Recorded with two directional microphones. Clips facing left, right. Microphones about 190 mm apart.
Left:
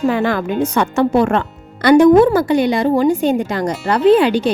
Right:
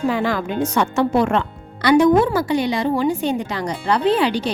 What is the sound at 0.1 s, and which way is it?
Speech, 60° left (ahead or behind).